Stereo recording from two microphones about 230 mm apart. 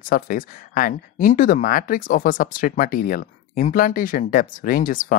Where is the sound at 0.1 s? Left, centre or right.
Left.